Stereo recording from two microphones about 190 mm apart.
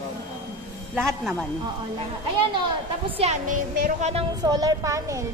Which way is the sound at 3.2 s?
30° right (ahead or behind).